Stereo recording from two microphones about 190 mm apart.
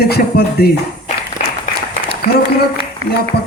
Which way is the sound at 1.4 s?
45° left (ahead or behind).